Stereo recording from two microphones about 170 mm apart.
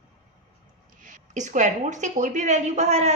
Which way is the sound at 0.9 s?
50° right (ahead or behind).